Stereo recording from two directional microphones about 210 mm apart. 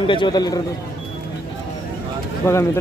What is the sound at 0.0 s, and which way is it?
Speech, 20° left (ahead or behind).